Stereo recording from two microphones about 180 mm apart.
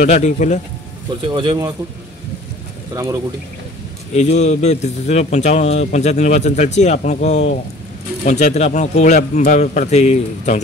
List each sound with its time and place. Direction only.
0.0 s speech: 40° left (ahead or behind)
1.3 s speech: 25° right (ahead or behind)
2.9 s speech: 20° right (ahead or behind)
4.1 s speech: 40° left (ahead or behind)